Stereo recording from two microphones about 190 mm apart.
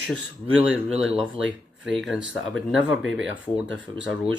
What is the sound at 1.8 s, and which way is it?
Speech, centre (ahead or behind).